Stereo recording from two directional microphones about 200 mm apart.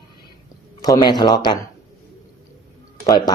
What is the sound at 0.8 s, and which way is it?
Speech, 20° left (ahead or behind).